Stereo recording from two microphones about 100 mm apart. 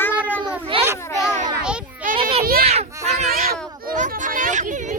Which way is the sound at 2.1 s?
80° right.